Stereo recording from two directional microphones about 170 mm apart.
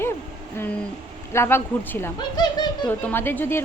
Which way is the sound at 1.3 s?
15° left (ahead or behind).